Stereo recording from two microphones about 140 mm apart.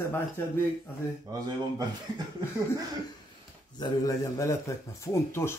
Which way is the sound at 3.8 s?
25° left (ahead or behind).